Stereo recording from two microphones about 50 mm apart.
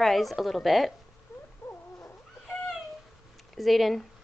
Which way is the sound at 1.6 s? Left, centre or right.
Left.